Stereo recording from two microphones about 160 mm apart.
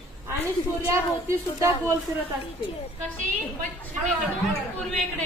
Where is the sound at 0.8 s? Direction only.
15° right (ahead or behind).